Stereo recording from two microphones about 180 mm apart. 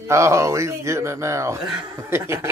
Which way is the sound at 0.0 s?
15° right (ahead or behind).